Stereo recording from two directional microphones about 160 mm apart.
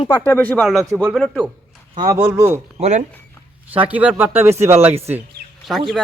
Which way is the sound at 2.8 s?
45° right (ahead or behind).